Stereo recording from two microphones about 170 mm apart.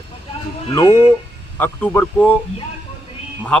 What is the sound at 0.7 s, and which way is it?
Speech, 15° left (ahead or behind).